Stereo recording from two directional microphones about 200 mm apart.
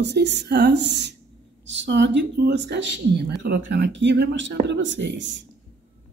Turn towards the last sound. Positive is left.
turn(degrees=-65)  # may be behind; listen again after turning